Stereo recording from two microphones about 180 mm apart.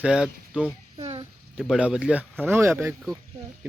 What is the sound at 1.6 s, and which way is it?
Speech, 5° right (ahead or behind).